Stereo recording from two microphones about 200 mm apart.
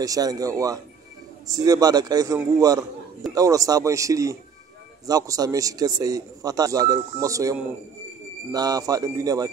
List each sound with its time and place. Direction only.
0.0 s a man's voice: 20° right (ahead or behind)